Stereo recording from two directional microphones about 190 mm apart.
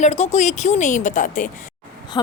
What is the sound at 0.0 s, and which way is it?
Speech, 35° left (ahead or behind).